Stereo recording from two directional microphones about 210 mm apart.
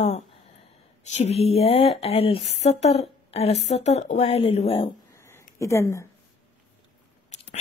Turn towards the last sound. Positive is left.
turn(degrees=35)  # may be behind; listen again after turning